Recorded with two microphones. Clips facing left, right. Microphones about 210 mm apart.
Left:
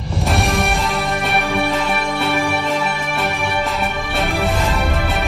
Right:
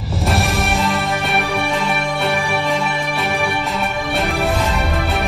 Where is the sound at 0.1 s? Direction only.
Centre (ahead or behind).